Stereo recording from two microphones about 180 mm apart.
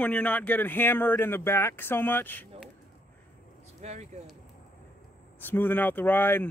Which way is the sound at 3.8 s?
40° right (ahead or behind).